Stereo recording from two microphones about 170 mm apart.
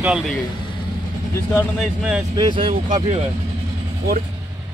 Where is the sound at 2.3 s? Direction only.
30° right (ahead or behind).